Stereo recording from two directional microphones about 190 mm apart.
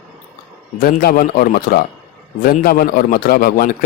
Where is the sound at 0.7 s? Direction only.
50° left (ahead or behind).